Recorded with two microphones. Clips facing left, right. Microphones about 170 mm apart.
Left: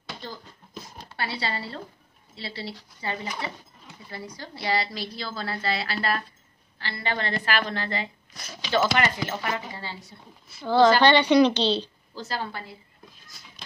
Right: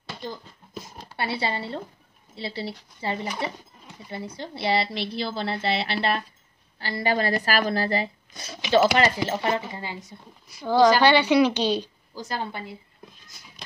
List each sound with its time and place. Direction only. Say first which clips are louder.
1.1 s a woman's voice: right 3 dB; 25° right (ahead or behind)
6.8 s a woman's voice: right 6 dB; 40° right (ahead or behind); by 12.7 s 20° right (ahead or behind)